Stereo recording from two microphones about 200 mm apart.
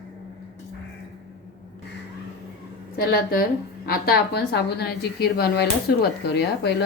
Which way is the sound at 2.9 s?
50° left (ahead or behind).